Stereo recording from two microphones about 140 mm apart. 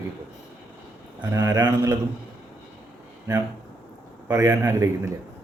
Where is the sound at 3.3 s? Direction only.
25° right (ahead or behind).